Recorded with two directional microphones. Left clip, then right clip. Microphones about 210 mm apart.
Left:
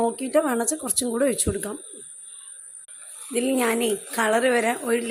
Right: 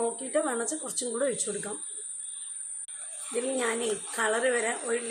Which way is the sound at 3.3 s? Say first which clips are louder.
Left 6 dB; 45° left (ahead or behind).